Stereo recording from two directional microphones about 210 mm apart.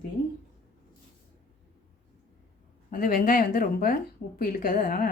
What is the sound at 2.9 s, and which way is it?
Speech, 45° left (ahead or behind).